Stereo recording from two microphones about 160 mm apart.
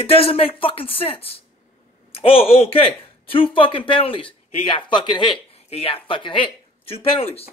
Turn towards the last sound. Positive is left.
turn(degrees=35)  # may be behind; listen again after turning